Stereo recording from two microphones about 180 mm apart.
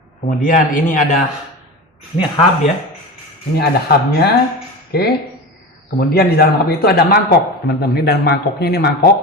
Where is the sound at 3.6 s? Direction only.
65° left (ahead or behind).